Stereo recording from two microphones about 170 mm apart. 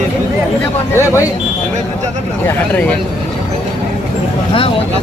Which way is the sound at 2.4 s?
10° left (ahead or behind).